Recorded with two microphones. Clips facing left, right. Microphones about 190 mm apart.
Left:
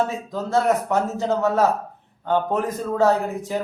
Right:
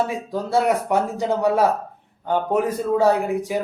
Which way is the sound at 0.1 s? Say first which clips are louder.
Right 1 dB; 10° right (ahead or behind).